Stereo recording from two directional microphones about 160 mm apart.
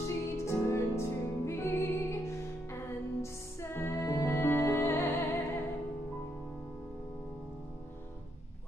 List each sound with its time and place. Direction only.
0.0 s music: 15° left (ahead or behind)